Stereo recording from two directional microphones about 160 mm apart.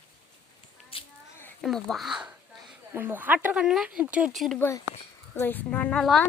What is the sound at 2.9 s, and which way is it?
Speech, 15° right (ahead or behind).